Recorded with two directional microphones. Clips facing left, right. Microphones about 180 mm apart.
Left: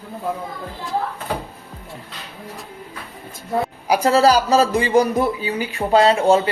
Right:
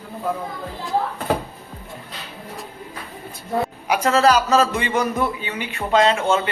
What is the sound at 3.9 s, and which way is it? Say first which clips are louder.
A man's voice: left 2 dB; 35° left (ahead or behind).